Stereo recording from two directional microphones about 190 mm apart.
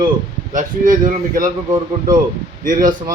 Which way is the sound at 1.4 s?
20° right (ahead or behind).